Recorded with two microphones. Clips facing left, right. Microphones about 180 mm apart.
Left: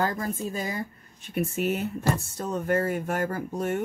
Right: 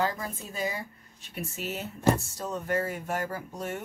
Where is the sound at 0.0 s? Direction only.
50° left (ahead or behind).